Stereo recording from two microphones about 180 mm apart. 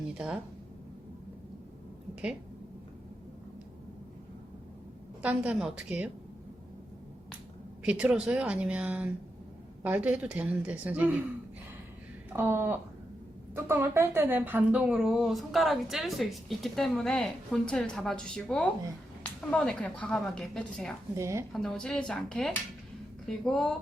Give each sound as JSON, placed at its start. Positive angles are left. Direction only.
{"t": 0.1, "sound": "speech", "side_deg": -5}
{"t": 5.2, "sound": "a woman's voice", "side_deg": -5}
{"t": 7.9, "sound": "a woman's voice", "side_deg": -5}
{"t": 12.4, "sound": "a woman's voice", "side_deg": -10}
{"t": 21.2, "sound": "a woman's voice", "side_deg": -15}
{"t": 21.5, "sound": "a woman's voice", "side_deg": 5}